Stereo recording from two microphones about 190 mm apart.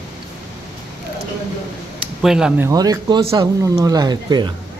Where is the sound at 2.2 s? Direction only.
5° right (ahead or behind); by 4.5 s 20° right (ahead or behind).